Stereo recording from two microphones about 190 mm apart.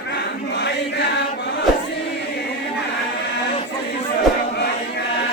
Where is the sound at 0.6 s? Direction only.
60° left (ahead or behind).